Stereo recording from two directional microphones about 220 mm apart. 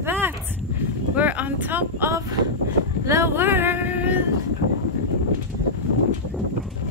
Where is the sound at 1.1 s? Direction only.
5° right (ahead or behind).